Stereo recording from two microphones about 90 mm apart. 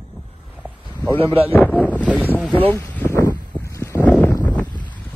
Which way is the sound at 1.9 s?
15° right (ahead or behind).